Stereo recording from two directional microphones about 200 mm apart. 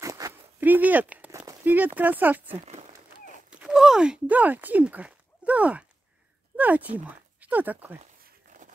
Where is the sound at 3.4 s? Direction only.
5° right (ahead or behind).